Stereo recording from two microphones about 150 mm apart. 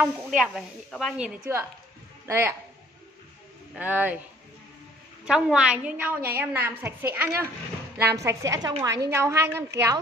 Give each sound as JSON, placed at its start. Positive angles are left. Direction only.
{"t": 0.0, "sound": "a man's voice", "side_deg": -5}
{"t": 3.7, "sound": "a woman's voice", "side_deg": -10}
{"t": 5.2, "sound": "a woman's voice", "side_deg": -5}